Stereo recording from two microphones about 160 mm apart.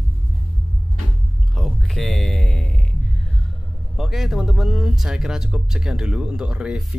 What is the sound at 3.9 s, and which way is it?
Speech, centre (ahead or behind).